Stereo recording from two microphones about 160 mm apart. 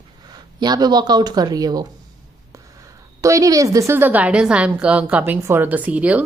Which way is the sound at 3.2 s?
20° right (ahead or behind).